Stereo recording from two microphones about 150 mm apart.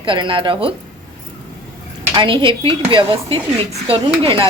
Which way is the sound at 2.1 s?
35° right (ahead or behind).